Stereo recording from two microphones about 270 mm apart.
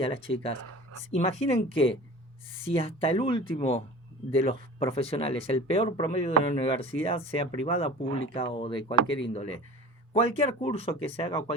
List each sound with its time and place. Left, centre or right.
1.1 s speech: left